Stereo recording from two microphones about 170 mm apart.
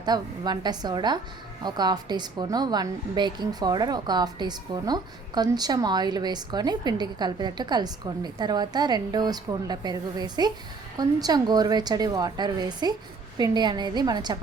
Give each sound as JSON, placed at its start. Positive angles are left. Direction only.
{"t": 0.0, "sound": "a woman's voice", "side_deg": -25}